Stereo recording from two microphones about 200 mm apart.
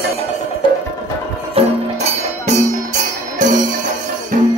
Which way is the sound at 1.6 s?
30° right (ahead or behind).